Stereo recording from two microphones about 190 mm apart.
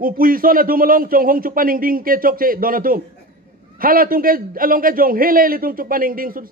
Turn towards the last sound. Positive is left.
turn(degrees=-50)  # may be behind; listen again after turning